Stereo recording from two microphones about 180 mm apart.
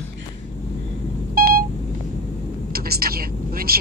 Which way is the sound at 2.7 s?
55° right (ahead or behind).